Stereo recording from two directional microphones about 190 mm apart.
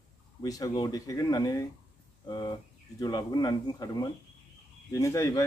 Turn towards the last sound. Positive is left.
turn(degrees=15)  # may be behind; listen again after turning